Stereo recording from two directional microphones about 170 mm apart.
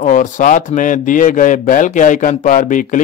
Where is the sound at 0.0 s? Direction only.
45° left (ahead or behind).